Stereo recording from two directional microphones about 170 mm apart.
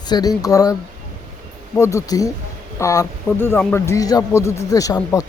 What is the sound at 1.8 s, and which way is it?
Speech, 20° left (ahead or behind).